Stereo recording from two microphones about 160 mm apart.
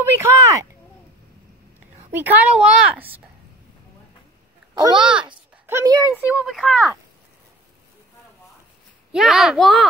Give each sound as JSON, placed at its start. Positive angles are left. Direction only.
{"t": 0.0, "sound": "a woman's voice", "side_deg": -15}
{"t": 2.0, "sound": "a woman's voice", "side_deg": -10}
{"t": 4.9, "sound": "speech", "side_deg": -5}
{"t": 5.7, "sound": "a woman's voice", "side_deg": -20}
{"t": 6.1, "sound": "speech", "side_deg": -5}
{"t": 9.1, "sound": "speech", "side_deg": 0}